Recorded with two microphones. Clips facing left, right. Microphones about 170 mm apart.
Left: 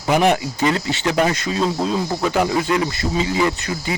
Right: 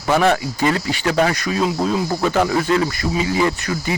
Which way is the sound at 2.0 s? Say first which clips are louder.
Right 1 dB; 5° left (ahead or behind).